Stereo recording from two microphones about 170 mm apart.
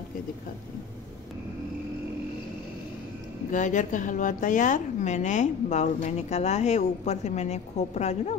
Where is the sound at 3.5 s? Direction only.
45° left (ahead or behind).